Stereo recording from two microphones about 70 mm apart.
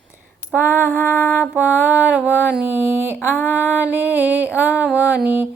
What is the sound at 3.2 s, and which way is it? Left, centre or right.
Music, left.